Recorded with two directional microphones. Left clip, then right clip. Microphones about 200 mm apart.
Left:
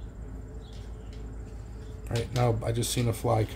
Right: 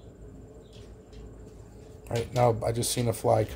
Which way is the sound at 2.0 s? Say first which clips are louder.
Right 4 dB; 15° right (ahead or behind).